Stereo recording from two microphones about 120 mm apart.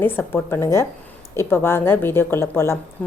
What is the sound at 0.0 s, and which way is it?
A woman's voice, 20° left (ahead or behind).